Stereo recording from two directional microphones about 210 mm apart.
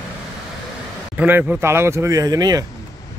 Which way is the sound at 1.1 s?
10° right (ahead or behind).